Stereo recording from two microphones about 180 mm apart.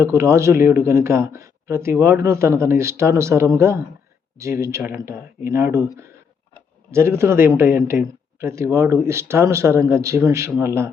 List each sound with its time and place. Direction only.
0.0 s speech: 15° right (ahead or behind)
6.9 s speech: 15° right (ahead or behind)